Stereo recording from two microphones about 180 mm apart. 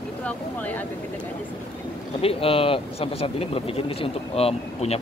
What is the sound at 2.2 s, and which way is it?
Speech, 30° left (ahead or behind).